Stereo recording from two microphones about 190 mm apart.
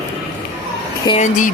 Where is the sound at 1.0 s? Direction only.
35° left (ahead or behind).